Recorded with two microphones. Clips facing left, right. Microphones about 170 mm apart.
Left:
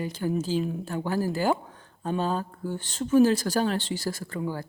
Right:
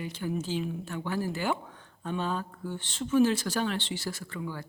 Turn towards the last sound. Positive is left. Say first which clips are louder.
# left 5 dB
turn(degrees=40)  # may be behind; listen again after turning